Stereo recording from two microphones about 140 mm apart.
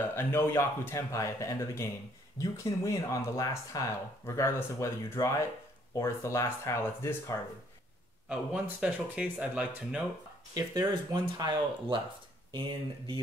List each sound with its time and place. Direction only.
0.1 s speech: 15° left (ahead or behind)
8.3 s speech: 10° right (ahead or behind)
10.5 s speech: 25° right (ahead or behind)